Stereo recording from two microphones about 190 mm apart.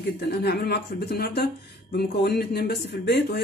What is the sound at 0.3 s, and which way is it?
Speech, 60° left (ahead or behind).